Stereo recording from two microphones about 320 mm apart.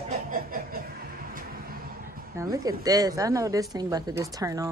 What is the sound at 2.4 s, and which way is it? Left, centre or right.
A woman's voice, centre.